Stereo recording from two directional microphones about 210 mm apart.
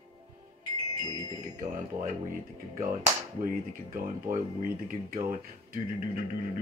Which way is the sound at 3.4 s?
40° right (ahead or behind).